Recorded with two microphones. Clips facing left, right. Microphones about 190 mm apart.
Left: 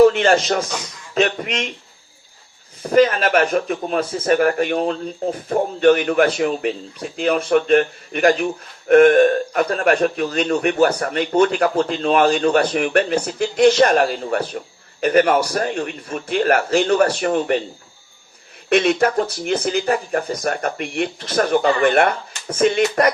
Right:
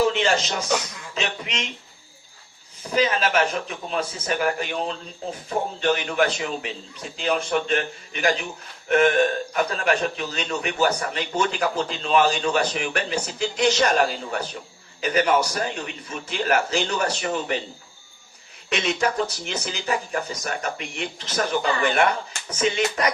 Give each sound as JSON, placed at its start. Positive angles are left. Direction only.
{"t": 0.0, "sound": "a man's voice", "side_deg": 55}
{"t": 2.8, "sound": "a man's voice", "side_deg": 55}
{"t": 18.7, "sound": "a man's voice", "side_deg": 55}